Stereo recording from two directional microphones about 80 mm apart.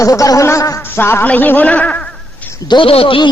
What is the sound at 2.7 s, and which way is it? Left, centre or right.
Speech, left.